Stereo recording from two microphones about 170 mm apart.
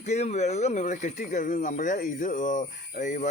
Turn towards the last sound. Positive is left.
turn(degrees=50)  # may be behind; listen again after turning